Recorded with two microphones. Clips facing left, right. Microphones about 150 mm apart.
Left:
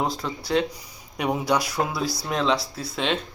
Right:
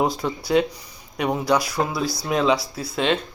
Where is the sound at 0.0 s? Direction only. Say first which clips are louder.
Right 4 dB; 10° right (ahead or behind).